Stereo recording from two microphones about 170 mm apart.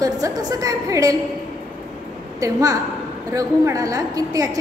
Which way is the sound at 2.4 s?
20° right (ahead or behind).